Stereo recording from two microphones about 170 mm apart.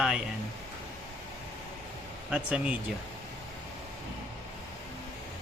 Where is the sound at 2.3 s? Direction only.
5° right (ahead or behind).